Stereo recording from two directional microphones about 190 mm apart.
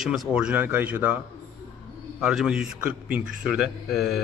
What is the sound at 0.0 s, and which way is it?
A man's voice, centre (ahead or behind).